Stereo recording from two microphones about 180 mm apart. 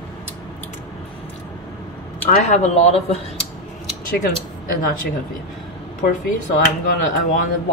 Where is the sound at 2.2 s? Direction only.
35° left (ahead or behind).